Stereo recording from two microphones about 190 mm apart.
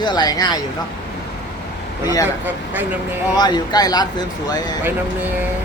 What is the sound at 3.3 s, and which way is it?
Speech, 20° left (ahead or behind).